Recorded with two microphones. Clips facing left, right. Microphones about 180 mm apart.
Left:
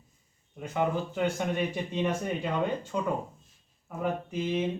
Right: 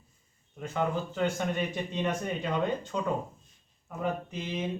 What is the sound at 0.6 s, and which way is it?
Speech, 15° left (ahead or behind).